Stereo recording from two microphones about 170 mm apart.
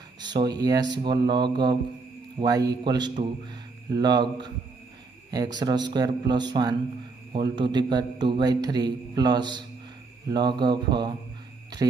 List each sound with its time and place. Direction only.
0.2 s a man's voice: 25° right (ahead or behind)